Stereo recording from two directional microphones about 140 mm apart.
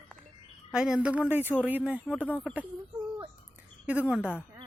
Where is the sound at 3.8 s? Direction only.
10° right (ahead or behind).